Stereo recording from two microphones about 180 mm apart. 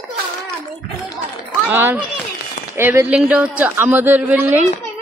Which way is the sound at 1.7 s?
10° right (ahead or behind).